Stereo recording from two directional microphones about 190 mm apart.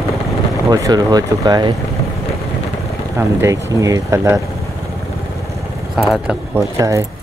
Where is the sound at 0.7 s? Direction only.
20° right (ahead or behind).